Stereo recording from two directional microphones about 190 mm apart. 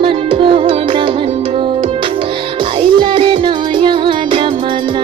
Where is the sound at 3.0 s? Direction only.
25° right (ahead or behind).